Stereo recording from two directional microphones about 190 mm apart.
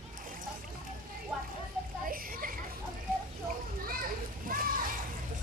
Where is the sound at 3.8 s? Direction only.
50° right (ahead or behind).